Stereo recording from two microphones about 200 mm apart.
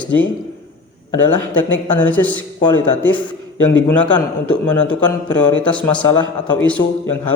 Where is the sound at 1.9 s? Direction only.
10° left (ahead or behind).